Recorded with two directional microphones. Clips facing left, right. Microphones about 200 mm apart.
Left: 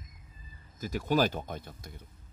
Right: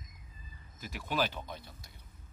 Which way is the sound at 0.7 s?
40° left (ahead or behind).